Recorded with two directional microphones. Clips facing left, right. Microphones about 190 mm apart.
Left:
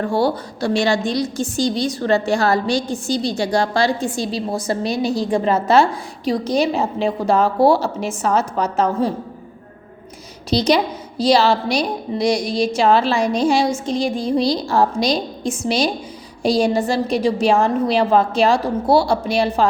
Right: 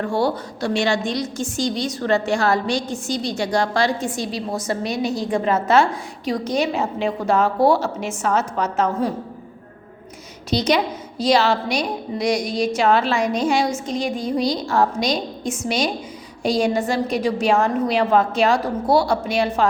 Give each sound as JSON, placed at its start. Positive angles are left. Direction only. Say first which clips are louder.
{"t": 0.0, "sound": "a woman's voice", "louder": "left 2 dB", "side_deg": 35}
{"t": 10.5, "sound": "a woman's voice", "louder": "left 3 dB", "side_deg": 35}